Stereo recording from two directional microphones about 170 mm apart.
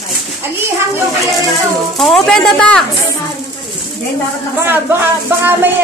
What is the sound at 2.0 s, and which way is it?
Speech, centre (ahead or behind).